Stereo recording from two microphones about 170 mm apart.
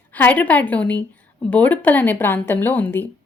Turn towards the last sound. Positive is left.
turn(degrees=10)  # may be behind; listen again after turning